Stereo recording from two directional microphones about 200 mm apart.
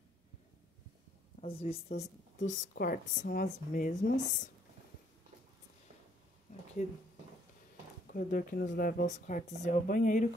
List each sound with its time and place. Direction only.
1.4 s speech: 30° left (ahead or behind)
6.8 s speech: 45° left (ahead or behind)
8.1 s speech: 45° left (ahead or behind)